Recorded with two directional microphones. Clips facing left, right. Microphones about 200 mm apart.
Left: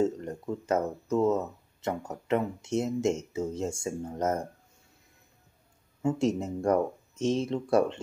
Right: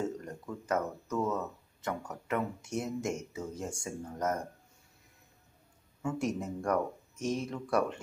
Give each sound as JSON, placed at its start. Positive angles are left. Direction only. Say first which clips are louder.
{"t": 0.0, "sound": "speech", "louder": "left 8 dB", "side_deg": 25}
{"t": 6.0, "sound": "speech", "louder": "left 6 dB", "side_deg": 25}